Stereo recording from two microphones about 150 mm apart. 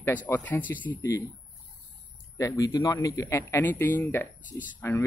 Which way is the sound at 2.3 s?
20° left (ahead or behind).